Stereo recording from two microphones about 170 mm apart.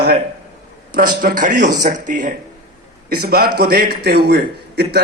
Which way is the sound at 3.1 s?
65° right (ahead or behind).